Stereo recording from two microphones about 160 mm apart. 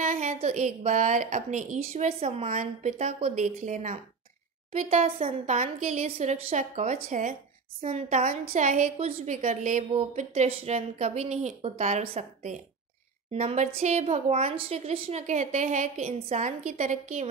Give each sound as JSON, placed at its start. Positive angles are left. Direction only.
{"t": 0.0, "sound": "a woman's voice", "side_deg": -50}